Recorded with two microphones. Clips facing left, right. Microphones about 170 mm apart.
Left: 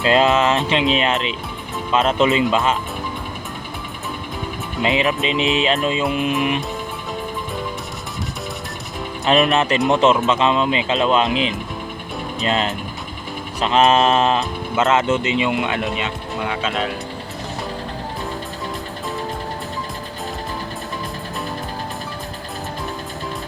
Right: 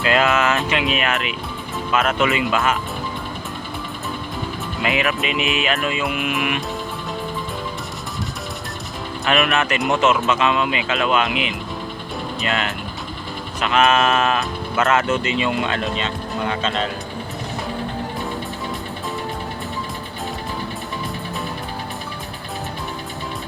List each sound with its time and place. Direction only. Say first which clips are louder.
0.0 s speech: left 3 dB; 25° left (ahead or behind)
4.8 s speech: left 3 dB; 25° left (ahead or behind)
9.2 s speech: left 3 dB; 30° left (ahead or behind)
16.3 s speech: even; 5° left (ahead or behind)